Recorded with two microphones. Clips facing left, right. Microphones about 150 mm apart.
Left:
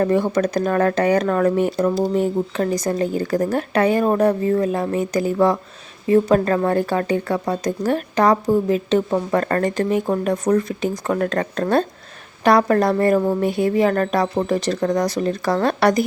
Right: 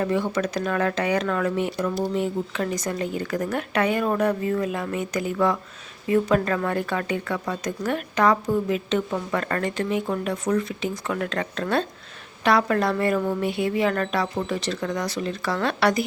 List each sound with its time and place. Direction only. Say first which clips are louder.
0.0 s speech: left 6 dB; 45° left (ahead or behind)